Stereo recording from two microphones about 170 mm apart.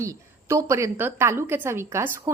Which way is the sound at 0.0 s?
15° right (ahead or behind).